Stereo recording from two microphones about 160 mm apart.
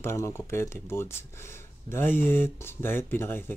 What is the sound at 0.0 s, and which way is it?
Speech, 15° left (ahead or behind).